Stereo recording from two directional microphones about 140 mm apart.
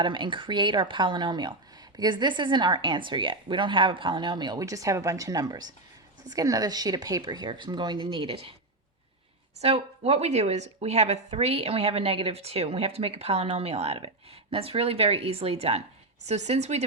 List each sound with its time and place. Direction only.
0.0 s a woman's voice: 35° right (ahead or behind)
9.6 s a woman's voice: 45° right (ahead or behind)